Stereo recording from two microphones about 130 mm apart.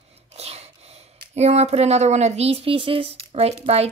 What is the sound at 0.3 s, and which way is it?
Dog, 55° right (ahead or behind).